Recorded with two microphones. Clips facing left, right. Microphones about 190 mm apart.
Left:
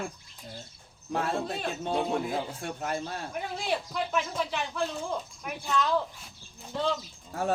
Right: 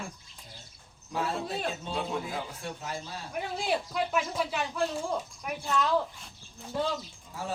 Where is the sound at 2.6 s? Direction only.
55° left (ahead or behind).